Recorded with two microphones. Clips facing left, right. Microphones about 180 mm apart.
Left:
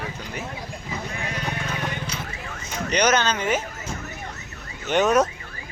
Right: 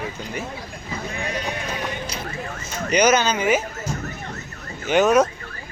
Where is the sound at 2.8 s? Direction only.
5° right (ahead or behind).